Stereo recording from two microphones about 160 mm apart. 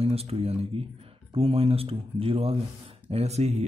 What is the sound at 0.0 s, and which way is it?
Speech, 40° right (ahead or behind).